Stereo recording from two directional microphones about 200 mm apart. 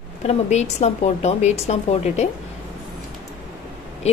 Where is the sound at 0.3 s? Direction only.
35° left (ahead or behind).